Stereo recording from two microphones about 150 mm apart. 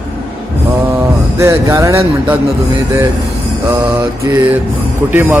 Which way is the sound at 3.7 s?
15° right (ahead or behind).